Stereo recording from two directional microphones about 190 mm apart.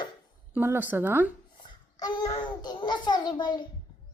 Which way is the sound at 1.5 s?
20° left (ahead or behind).